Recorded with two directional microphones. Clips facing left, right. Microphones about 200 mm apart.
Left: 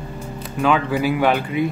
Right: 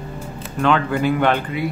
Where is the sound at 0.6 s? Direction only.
5° left (ahead or behind).